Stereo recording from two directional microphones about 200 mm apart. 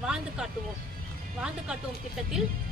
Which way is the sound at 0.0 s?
5° right (ahead or behind).